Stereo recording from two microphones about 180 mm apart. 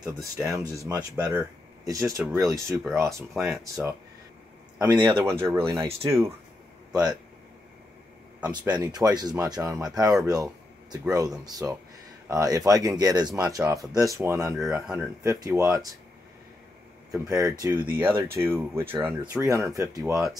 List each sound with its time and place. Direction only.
0.0 s speech: 20° right (ahead or behind)
5.2 s speech: 15° right (ahead or behind)
8.8 s speech: 20° right (ahead or behind)
14.6 s speech: 5° right (ahead or behind)
15.2 s speech: 20° right (ahead or behind)
17.1 s speech: 5° right (ahead or behind)
17.6 s speech: 15° right (ahead or behind)